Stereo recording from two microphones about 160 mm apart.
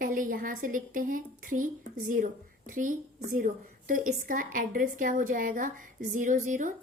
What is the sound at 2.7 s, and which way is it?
A woman's voice, 55° right (ahead or behind).